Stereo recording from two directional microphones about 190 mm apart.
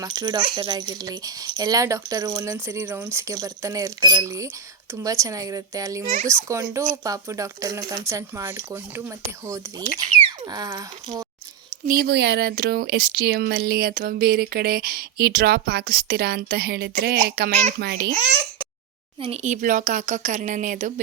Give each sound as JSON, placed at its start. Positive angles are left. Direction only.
{"t": 0.0, "sound": "speech", "side_deg": -20}
{"t": 11.9, "sound": "a child's voice", "side_deg": -55}
{"t": 19.2, "sound": "speech", "side_deg": -35}